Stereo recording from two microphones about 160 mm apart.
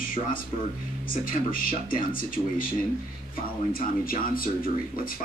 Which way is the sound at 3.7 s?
65° left (ahead or behind).